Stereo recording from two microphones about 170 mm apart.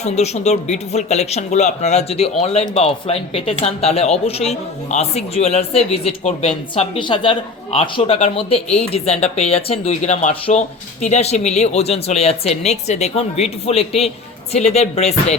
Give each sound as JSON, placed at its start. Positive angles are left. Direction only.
{"t": 0.0, "sound": "a man's voice", "side_deg": 40}